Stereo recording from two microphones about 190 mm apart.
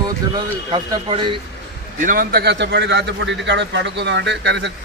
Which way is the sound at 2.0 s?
50° right (ahead or behind).